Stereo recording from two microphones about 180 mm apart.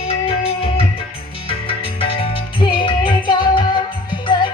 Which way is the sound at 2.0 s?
30° left (ahead or behind).